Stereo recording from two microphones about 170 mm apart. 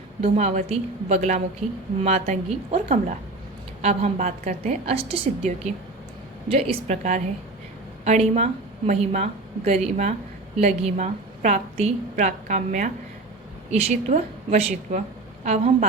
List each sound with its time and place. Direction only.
0.2 s a woman's voice: 45° right (ahead or behind)